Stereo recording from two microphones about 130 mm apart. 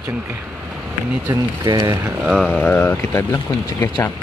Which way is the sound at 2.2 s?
Centre (ahead or behind).